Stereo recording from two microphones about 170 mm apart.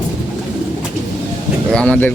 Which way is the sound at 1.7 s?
5° left (ahead or behind).